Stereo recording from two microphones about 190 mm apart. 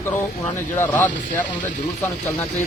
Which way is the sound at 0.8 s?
10° left (ahead or behind).